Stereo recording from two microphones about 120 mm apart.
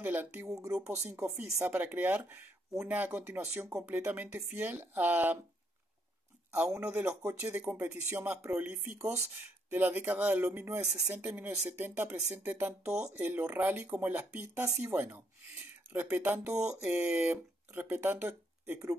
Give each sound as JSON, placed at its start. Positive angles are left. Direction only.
{"t": 0.0, "sound": "speech", "side_deg": -15}
{"t": 6.5, "sound": "speech", "side_deg": -20}